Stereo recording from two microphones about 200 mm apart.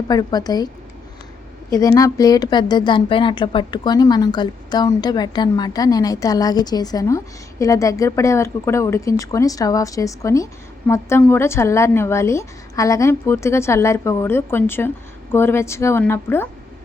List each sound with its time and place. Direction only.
0.1 s speech: 20° left (ahead or behind)
1.7 s a woman's voice: 15° left (ahead or behind)